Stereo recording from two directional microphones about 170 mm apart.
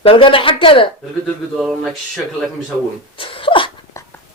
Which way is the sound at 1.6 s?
Centre (ahead or behind).